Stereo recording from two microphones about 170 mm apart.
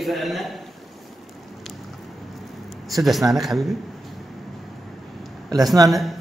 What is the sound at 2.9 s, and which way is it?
Speech, centre (ahead or behind).